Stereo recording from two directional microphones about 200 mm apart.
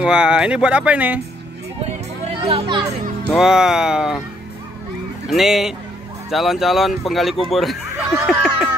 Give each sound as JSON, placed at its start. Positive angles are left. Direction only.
{"t": 0.0, "sound": "speech", "side_deg": -5}
{"t": 2.4, "sound": "a child's voice", "side_deg": -25}
{"t": 3.3, "sound": "speech", "side_deg": -5}
{"t": 5.3, "sound": "speech", "side_deg": 0}
{"t": 8.3, "sound": "a sound", "side_deg": 0}